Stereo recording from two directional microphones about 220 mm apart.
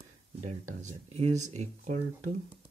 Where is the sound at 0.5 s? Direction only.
30° right (ahead or behind).